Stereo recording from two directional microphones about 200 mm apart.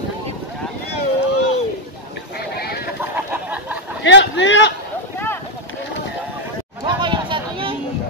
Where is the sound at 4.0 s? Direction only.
65° left (ahead or behind).